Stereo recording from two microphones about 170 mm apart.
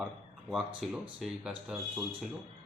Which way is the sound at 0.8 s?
Centre (ahead or behind).